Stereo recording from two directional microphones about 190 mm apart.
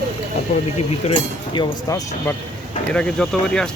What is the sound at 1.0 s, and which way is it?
Speech, 35° left (ahead or behind).